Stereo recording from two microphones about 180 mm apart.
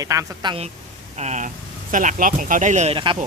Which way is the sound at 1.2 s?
40° right (ahead or behind).